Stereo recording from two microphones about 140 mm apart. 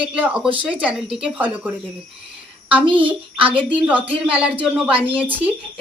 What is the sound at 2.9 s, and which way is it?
Speech, 35° right (ahead or behind).